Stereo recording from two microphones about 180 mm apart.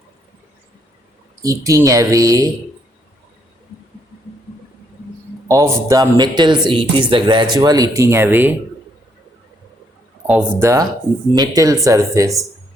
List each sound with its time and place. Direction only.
1.4 s speech: 15° right (ahead or behind)
5.5 s a man's voice: 20° right (ahead or behind)
10.2 s speech: 10° right (ahead or behind)